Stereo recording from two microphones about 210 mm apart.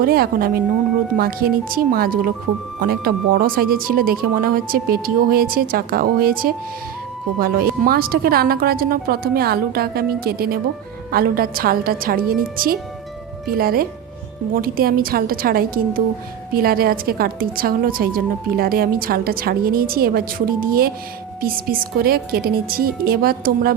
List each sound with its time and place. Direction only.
0.0 s a woman's voice: 45° right (ahead or behind)